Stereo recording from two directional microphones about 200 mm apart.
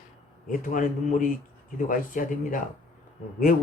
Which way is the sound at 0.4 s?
40° left (ahead or behind).